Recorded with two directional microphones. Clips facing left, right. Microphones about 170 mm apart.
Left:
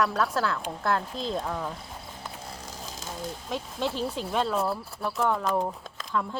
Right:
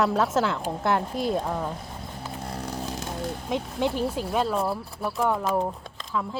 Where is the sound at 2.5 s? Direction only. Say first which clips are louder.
Right 9 dB; 60° right (ahead or behind).